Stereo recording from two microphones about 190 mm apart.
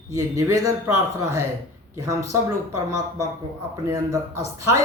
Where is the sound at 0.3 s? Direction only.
15° right (ahead or behind).